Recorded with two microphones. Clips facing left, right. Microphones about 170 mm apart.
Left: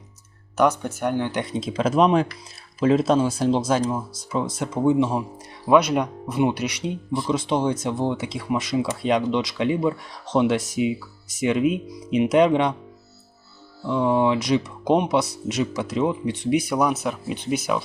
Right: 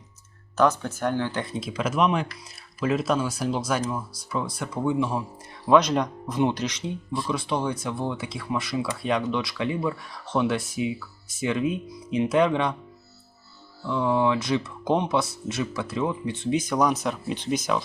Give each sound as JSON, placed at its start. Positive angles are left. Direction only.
{"t": 0.5, "sound": "speech", "side_deg": 15}
{"t": 5.6, "sound": "speech", "side_deg": 10}
{"t": 13.8, "sound": "speech", "side_deg": 20}